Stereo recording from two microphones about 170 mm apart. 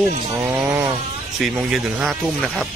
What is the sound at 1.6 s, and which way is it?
Speech, 5° right (ahead or behind).